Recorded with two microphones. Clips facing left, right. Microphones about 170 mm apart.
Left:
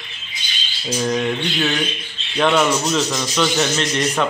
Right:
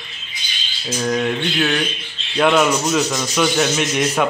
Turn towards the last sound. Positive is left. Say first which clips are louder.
# right 1 dB
turn(degrees=-10)  # may be behind; listen again after turning